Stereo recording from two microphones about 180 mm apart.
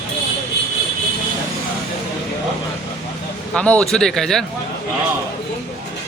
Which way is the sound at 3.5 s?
5° left (ahead or behind).